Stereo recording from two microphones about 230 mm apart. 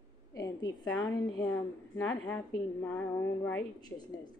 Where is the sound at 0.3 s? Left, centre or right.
Centre.